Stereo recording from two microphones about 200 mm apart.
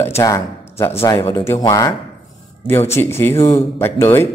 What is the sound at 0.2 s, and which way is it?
Speech, 15° left (ahead or behind).